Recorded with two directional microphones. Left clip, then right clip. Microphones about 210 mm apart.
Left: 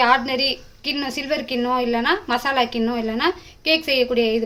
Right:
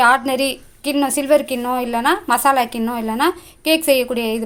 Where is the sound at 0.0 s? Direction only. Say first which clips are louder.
Right 3 dB; 30° right (ahead or behind).